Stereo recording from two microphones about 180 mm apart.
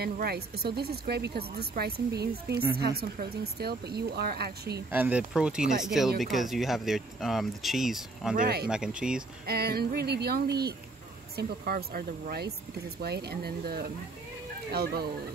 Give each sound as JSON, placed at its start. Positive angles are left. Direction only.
{"t": 0.0, "sound": "speech", "side_deg": -60}
{"t": 4.9, "sound": "speech", "side_deg": -10}
{"t": 8.4, "sound": "speech", "side_deg": -60}
{"t": 8.6, "sound": "speech", "side_deg": -5}
{"t": 9.5, "sound": "speech", "side_deg": -60}